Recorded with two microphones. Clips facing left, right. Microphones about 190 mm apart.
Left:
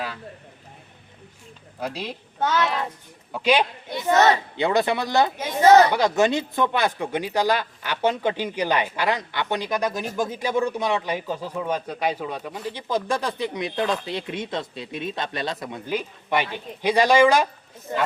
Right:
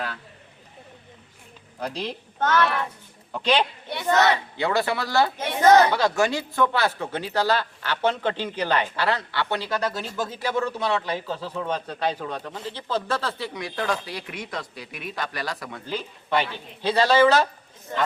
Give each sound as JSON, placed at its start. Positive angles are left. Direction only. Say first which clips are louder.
{"t": 1.8, "sound": "speech", "louder": "even", "side_deg": 5}